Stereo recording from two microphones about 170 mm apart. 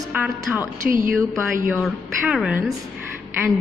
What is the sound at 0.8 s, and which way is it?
Speech, 55° right (ahead or behind).